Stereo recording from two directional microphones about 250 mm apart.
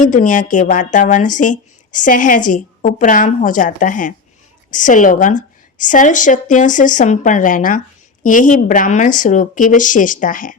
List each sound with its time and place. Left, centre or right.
0.0 s a woman's voice: left